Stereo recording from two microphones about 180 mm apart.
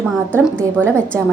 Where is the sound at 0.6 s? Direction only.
5° left (ahead or behind).